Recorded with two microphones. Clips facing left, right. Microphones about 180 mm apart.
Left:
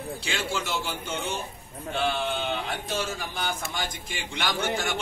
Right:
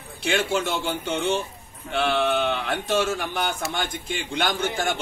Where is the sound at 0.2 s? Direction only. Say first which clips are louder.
Right 10 dB; 55° right (ahead or behind).